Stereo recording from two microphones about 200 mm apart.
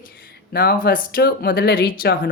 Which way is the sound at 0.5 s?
45° left (ahead or behind).